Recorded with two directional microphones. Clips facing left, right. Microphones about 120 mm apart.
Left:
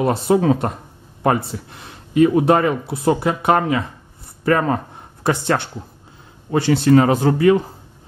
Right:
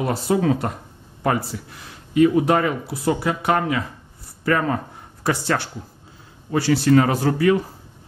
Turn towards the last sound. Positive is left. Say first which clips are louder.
# left 4 dB
turn(degrees=25)  # may be behind; listen again after turning